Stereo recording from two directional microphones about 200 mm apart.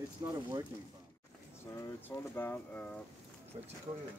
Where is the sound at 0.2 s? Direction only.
15° right (ahead or behind).